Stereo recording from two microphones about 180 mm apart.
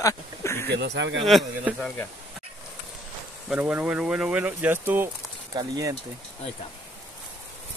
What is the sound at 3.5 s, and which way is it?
Speech, 10° right (ahead or behind).